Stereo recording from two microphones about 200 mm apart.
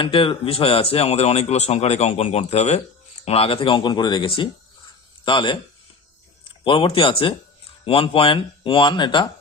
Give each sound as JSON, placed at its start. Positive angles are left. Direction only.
{"t": 0.0, "sound": "speech", "side_deg": 25}
{"t": 6.7, "sound": "speech", "side_deg": 25}